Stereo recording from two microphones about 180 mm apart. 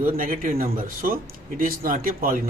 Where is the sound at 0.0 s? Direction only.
50° right (ahead or behind).